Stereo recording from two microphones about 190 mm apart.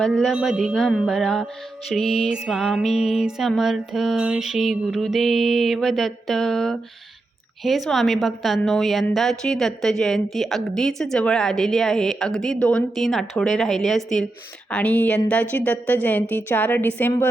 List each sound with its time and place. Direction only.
0.0 s a woman's voice: centre (ahead or behind)